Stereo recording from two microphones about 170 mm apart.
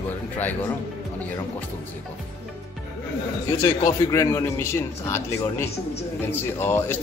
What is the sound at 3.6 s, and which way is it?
A man's voice, 15° left (ahead or behind).